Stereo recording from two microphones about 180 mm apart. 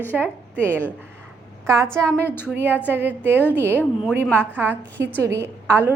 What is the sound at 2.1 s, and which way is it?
Speech, 10° left (ahead or behind).